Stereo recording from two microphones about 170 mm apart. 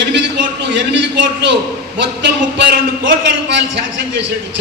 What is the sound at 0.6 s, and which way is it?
A man's voice, 90° right.